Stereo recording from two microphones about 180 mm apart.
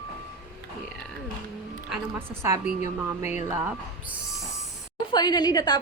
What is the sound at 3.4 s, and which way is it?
Speech, 10° right (ahead or behind).